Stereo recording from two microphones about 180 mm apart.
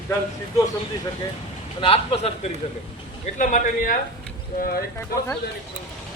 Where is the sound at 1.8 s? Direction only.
30° left (ahead or behind); by 4.0 s 50° left (ahead or behind).